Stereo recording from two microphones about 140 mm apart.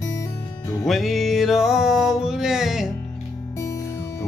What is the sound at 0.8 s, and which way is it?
Music, centre (ahead or behind).